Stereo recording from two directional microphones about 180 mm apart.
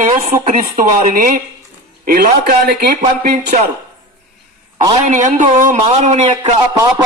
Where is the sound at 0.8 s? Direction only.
50° right (ahead or behind).